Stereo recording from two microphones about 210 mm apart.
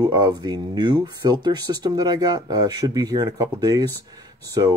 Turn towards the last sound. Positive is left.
turn(degrees=-15)  # may be behind; listen again after turning